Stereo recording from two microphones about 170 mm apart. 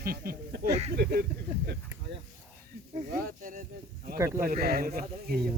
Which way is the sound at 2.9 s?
50° right (ahead or behind).